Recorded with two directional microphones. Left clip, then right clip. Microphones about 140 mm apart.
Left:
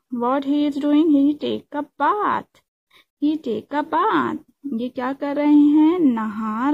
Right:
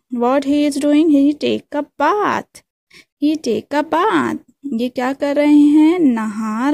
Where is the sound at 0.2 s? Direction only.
40° right (ahead or behind).